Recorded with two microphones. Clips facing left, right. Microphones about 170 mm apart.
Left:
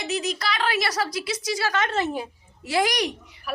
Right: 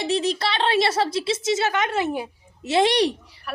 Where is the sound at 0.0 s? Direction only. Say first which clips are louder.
Right 5 dB; 30° right (ahead or behind); by 2.2 s 15° right (ahead or behind).